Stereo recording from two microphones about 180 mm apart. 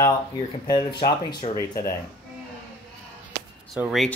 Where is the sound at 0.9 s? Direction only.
25° left (ahead or behind).